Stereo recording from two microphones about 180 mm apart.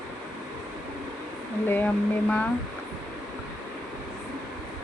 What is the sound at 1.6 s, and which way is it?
Speech, 10° left (ahead or behind).